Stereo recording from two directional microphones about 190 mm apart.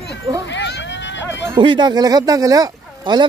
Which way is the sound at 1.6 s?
25° right (ahead or behind).